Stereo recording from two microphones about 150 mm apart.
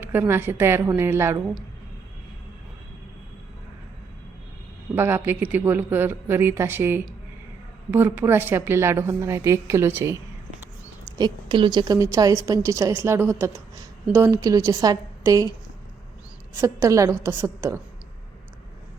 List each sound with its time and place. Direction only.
0.0 s a woman's voice: 15° right (ahead or behind)
4.9 s a woman's voice: 15° right (ahead or behind)
11.2 s a woman's voice: 30° right (ahead or behind)
16.6 s a woman's voice: 20° right (ahead or behind)